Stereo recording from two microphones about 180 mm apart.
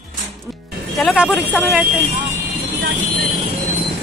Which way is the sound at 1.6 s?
10° right (ahead or behind).